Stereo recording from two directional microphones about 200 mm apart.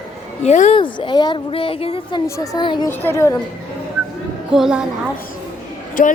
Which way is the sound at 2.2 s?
15° left (ahead or behind).